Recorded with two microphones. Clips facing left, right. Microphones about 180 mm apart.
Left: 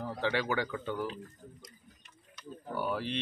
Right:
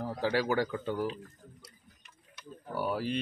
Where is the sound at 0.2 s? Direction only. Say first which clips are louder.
Right 3 dB; 40° right (ahead or behind).